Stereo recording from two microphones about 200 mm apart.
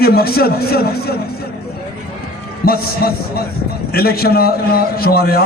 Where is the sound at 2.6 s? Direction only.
50° left (ahead or behind).